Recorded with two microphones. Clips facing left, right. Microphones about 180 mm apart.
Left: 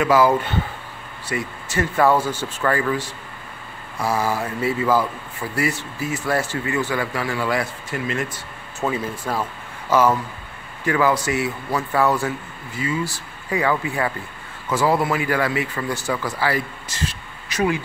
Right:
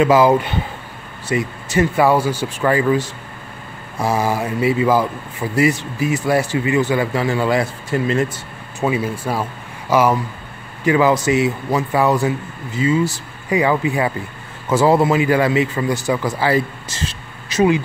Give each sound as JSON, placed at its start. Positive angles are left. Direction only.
{"t": 0.0, "sound": "a man's voice", "side_deg": -20}
{"t": 8.8, "sound": "a man's voice", "side_deg": -10}